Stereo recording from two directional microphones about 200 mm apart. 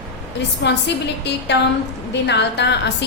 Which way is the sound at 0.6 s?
55° left (ahead or behind).